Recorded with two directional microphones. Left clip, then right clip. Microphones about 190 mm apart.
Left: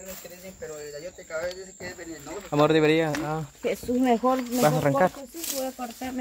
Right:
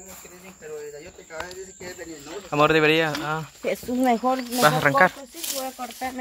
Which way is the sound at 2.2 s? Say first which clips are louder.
Right 2 dB; 10° left (ahead or behind).